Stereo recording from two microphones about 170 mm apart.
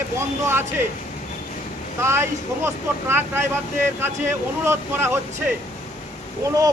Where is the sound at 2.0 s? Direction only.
15° right (ahead or behind).